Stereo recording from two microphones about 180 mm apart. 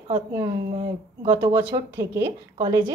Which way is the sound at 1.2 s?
25° right (ahead or behind).